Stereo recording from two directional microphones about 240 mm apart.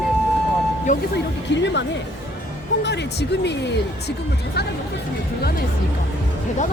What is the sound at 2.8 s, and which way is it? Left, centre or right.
Speech, left.